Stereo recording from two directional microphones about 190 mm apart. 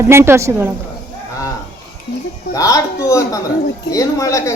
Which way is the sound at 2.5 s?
15° left (ahead or behind).